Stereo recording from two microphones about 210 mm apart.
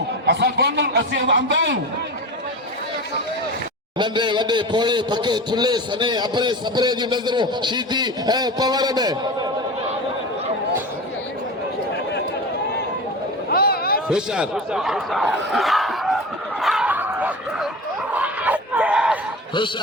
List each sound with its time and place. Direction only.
0.3 s a man's voice: 55° right (ahead or behind)
3.9 s a man's voice: 20° right (ahead or behind)
13.5 s a sound: 45° left (ahead or behind)
14.1 s speech: 5° right (ahead or behind)
16.6 s snicker: centre (ahead or behind)
18.1 s a sound: 5° right (ahead or behind)